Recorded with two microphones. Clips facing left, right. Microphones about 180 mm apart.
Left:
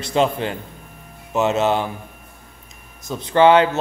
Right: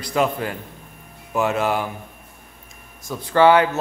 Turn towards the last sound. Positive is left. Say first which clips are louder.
# left 1 dB
turn(degrees=25)  # may be behind; listen again after turning